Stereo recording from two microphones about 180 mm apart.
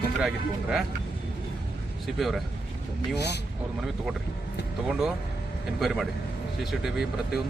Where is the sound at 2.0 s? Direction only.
Centre (ahead or behind).